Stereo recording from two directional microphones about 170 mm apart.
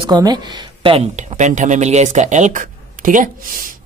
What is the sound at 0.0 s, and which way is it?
Speech, 25° right (ahead or behind).